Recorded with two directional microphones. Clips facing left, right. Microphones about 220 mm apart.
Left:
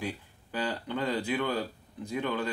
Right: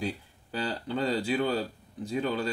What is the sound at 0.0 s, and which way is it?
Speech, 35° right (ahead or behind).